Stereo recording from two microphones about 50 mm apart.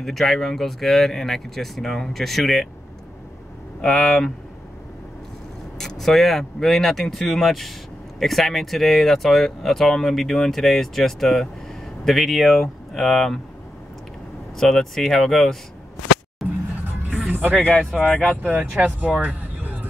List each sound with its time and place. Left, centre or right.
0.0 s speech: centre
3.8 s speech: centre
5.8 s speech: centre
14.6 s speech: centre
16.4 s music: centre
17.3 s music: right
18.0 s speech: left
18.5 s speech: right